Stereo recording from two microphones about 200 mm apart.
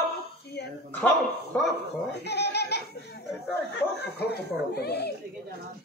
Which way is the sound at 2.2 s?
55° left (ahead or behind).